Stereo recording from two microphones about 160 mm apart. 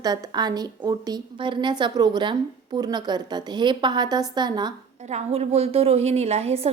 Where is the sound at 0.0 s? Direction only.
25° right (ahead or behind).